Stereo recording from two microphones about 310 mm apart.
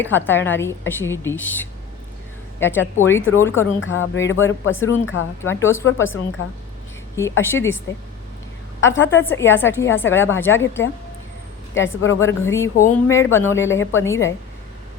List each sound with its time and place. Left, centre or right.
0.0 s a woman's voice: centre
3.2 s speech: left
3.4 s a woman's voice: centre
3.8 s speech: left
5.4 s a woman's voice: centre
6.4 s speech: left
7.2 s a woman's voice: centre
8.8 s a woman's voice: centre
12.2 s a woman's voice: centre